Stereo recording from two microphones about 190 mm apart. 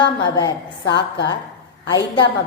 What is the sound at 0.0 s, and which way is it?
A woman's voice, 20° left (ahead or behind).